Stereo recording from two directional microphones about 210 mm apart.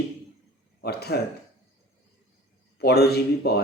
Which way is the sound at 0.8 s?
50° left (ahead or behind).